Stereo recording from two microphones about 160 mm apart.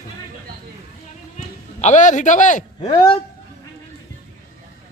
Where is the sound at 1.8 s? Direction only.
50° left (ahead or behind).